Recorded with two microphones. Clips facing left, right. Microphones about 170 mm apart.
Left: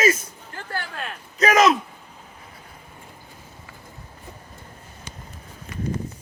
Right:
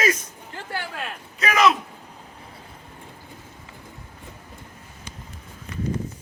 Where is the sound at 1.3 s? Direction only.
40° left (ahead or behind).